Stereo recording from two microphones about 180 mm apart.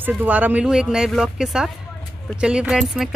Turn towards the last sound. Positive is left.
turn(degrees=-5)  # may be behind; listen again after turning